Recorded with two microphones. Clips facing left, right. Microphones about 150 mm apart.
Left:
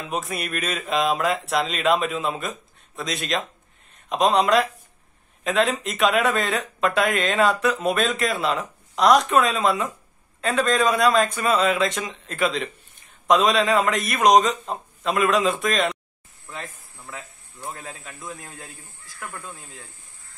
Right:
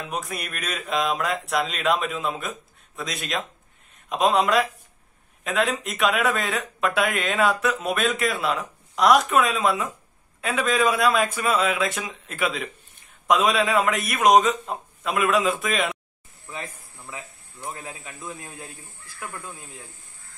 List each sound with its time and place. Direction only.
0.0 s speech: centre (ahead or behind)
16.4 s a sound: 15° right (ahead or behind)
17.6 s speech: 15° right (ahead or behind)